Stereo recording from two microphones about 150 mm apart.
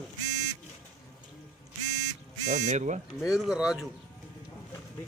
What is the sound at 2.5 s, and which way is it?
Speech, 50° right (ahead or behind).